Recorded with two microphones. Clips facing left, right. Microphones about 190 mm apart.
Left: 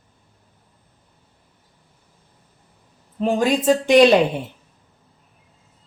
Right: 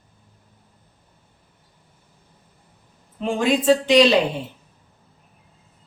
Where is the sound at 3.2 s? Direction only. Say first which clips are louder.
Left 2 dB; 40° left (ahead or behind).